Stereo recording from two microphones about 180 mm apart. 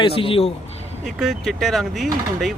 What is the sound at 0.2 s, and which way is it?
Speech, 30° left (ahead or behind).